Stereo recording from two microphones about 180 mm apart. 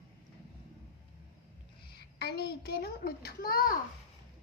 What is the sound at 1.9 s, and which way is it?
A child's voice, 60° left (ahead or behind).